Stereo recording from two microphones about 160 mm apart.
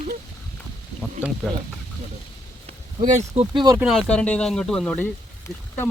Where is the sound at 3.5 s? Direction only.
25° right (ahead or behind).